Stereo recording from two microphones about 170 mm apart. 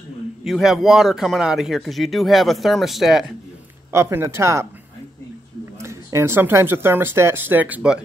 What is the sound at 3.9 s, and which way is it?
Speech, 15° right (ahead or behind).